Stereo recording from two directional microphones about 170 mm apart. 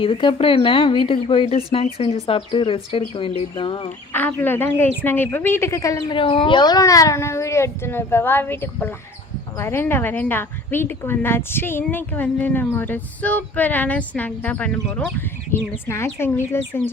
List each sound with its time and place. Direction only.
0.0 s speech: 30° left (ahead or behind)
4.1 s speech: 10° left (ahead or behind)